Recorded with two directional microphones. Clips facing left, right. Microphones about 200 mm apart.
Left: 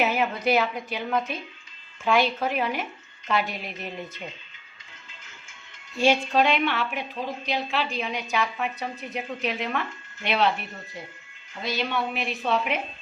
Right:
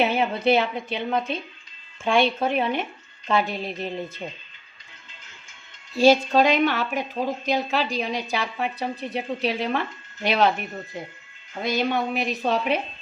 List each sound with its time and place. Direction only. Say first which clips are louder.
0.0 s a woman's voice: right 3 dB; 30° right (ahead or behind)
5.9 s a woman's voice: right 5 dB; 35° right (ahead or behind)
11.6 s a woman's voice: right 4 dB; 50° right (ahead or behind)